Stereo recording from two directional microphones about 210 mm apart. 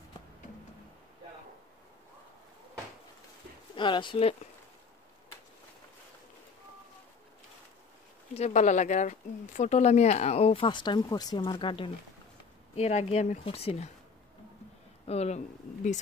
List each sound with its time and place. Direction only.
3.7 s speech: 20° left (ahead or behind)
8.4 s speech: 35° left (ahead or behind)
15.0 s speech: 30° left (ahead or behind)